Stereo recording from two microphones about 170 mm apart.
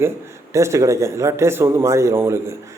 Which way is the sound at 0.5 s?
15° right (ahead or behind).